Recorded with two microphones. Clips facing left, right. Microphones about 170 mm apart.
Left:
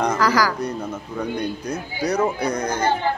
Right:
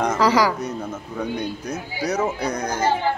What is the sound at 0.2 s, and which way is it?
Speech, 25° right (ahead or behind).